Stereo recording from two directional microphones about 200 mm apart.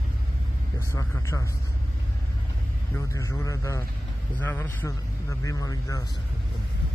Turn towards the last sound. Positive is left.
turn(degrees=15)  # may be behind; listen again after turning